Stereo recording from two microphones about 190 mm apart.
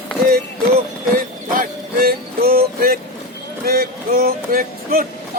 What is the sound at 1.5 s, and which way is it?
Music, 50° right (ahead or behind).